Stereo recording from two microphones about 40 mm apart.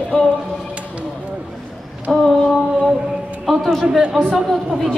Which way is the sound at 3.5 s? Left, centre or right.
Centre.